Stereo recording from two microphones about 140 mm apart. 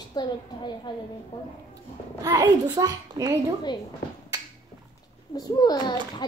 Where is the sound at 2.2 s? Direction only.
25° right (ahead or behind).